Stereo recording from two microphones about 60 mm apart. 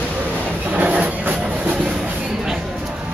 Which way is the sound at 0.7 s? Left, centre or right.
Right.